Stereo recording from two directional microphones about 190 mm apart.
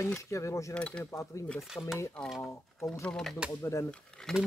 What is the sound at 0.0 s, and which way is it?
Speech, 15° left (ahead or behind).